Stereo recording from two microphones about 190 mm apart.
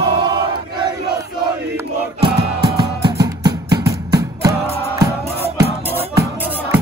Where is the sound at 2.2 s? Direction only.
25° right (ahead or behind).